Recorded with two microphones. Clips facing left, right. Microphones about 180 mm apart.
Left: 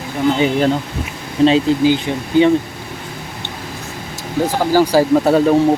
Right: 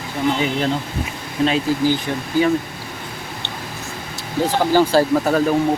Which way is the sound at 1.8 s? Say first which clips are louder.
Left 4 dB; 15° left (ahead or behind).